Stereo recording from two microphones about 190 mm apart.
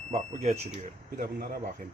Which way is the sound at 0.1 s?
35° right (ahead or behind).